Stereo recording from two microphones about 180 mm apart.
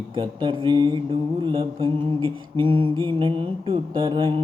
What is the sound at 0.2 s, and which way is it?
Mantra, 25° right (ahead or behind).